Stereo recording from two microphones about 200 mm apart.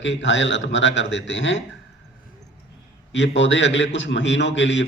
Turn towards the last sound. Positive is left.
turn(degrees=65)  # may be behind; listen again after turning